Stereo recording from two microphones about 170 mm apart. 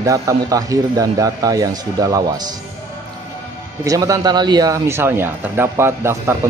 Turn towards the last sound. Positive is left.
turn(degrees=-15)  # may be behind; listen again after turning